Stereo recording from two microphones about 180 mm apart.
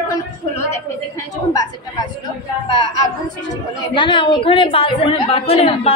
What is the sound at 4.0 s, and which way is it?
A woman's voice, 25° left (ahead or behind).